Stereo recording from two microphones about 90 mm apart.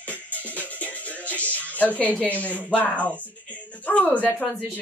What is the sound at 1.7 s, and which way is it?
Speech, 15° left (ahead or behind).